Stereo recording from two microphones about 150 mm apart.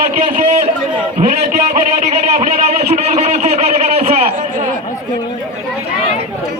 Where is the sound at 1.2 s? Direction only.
60° right (ahead or behind).